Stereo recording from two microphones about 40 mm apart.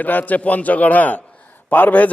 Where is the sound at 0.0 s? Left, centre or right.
Left.